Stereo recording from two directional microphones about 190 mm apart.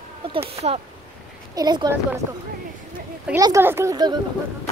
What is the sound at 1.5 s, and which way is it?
Speech, 20° right (ahead or behind).